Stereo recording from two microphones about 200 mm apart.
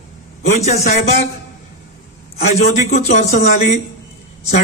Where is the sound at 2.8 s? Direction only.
35° left (ahead or behind).